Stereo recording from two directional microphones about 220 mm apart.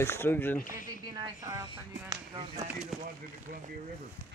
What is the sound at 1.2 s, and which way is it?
Speech, 15° right (ahead or behind).